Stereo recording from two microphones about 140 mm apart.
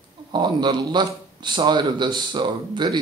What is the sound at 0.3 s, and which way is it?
Speech, 30° right (ahead or behind).